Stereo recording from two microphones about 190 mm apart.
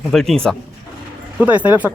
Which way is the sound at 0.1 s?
Centre (ahead or behind).